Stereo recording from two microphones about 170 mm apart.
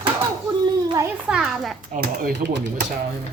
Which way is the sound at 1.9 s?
60° right (ahead or behind).